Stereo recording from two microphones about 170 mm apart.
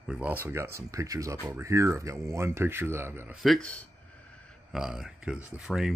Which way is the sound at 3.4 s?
5° left (ahead or behind).